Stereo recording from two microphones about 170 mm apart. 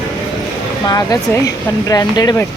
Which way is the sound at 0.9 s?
20° left (ahead or behind).